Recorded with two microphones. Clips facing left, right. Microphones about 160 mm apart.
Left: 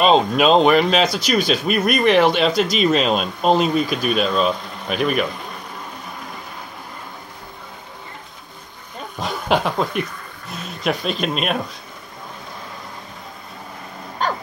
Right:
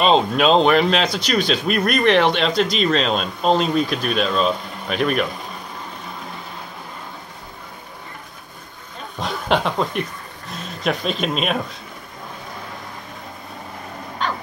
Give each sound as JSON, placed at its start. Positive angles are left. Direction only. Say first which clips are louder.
{"t": 0.0, "sound": "speech", "louder": "left 1 dB", "side_deg": 5}
{"t": 9.2, "sound": "speech", "louder": "even", "side_deg": 5}
{"t": 14.2, "sound": "dog", "louder": "left 2 dB", "side_deg": 45}